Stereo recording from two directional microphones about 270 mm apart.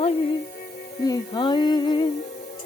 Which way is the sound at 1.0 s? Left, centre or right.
Centre.